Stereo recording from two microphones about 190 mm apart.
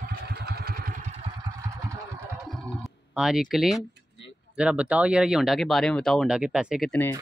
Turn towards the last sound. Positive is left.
turn(degrees=10)  # may be behind; listen again after turning